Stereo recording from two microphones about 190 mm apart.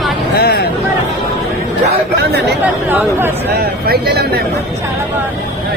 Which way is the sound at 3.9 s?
55° right (ahead or behind).